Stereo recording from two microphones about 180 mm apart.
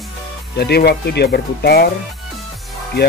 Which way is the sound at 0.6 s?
65° left (ahead or behind).